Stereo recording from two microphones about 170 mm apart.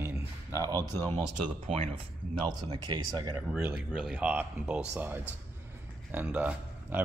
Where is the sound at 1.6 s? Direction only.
35° right (ahead or behind).